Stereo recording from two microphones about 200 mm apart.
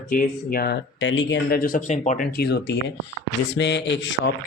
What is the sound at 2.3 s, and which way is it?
Speech, 55° left (ahead or behind).